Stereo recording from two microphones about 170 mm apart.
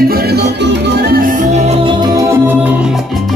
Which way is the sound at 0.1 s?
70° right (ahead or behind).